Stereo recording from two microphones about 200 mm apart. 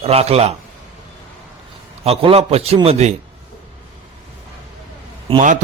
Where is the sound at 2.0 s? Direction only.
30° right (ahead or behind).